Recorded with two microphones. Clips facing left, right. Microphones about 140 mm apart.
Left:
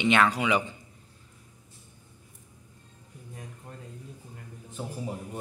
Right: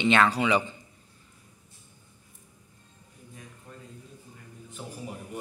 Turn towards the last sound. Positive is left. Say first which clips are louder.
# left 2 dB
turn(degrees=30)  # may be behind; listen again after turning